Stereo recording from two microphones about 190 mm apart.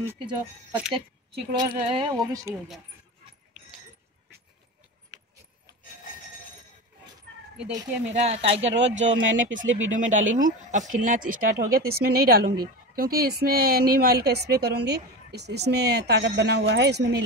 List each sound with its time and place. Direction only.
0.7 s speech: 10° right (ahead or behind)
1.5 s speech: 25° right (ahead or behind)
8.2 s speech: 30° right (ahead or behind)
8.7 s speech: 75° right (ahead or behind)
9.9 s speech: 40° right (ahead or behind); by 17.2 s 60° right (ahead or behind)